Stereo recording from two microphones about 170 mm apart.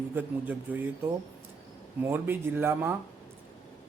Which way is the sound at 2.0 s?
15° right (ahead or behind).